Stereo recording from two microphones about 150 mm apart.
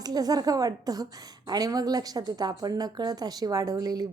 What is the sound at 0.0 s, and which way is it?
A woman's voice, 25° right (ahead or behind).